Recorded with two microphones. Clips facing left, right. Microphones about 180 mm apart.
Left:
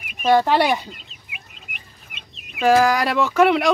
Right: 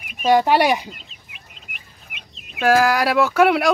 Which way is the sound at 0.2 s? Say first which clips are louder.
Right 1 dB; 10° right (ahead or behind).